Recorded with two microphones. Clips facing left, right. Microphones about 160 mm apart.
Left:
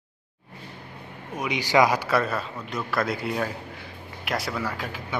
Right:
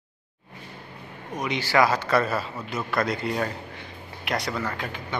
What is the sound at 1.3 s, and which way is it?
A man's voice, 10° left (ahead or behind).